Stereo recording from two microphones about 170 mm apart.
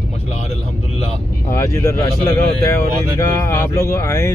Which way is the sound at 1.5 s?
20° left (ahead or behind).